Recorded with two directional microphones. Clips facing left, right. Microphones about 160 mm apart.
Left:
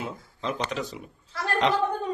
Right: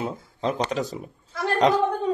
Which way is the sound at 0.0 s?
40° right (ahead or behind).